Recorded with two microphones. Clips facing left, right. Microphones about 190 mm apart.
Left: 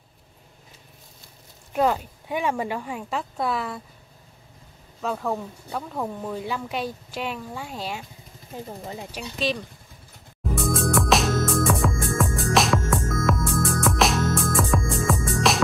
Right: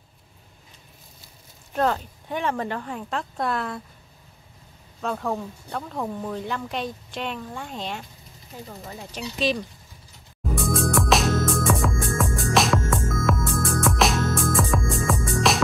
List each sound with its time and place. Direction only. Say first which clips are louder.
1.7 s speech: left 1 dB; 10° left (ahead or behind)
5.0 s speech: even; 5° left (ahead or behind)
8.6 s speech: left 2 dB; 20° left (ahead or behind)
9.4 s speech: right 2 dB; centre (ahead or behind)
10.5 s music: even; centre (ahead or behind)